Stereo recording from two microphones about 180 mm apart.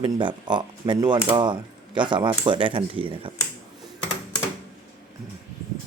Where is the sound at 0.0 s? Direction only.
25° right (ahead or behind).